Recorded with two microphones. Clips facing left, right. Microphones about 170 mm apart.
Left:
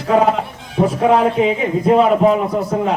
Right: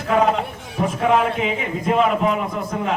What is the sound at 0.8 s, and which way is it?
A man's voice, 35° left (ahead or behind).